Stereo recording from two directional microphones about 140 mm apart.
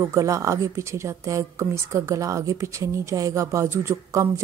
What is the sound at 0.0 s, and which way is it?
A woman's voice, 25° right (ahead or behind).